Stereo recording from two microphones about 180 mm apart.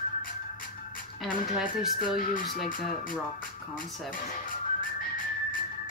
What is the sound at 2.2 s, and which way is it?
Speech, 50° left (ahead or behind).